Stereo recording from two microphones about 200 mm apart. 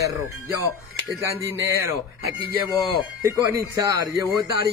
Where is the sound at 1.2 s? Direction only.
15° right (ahead or behind).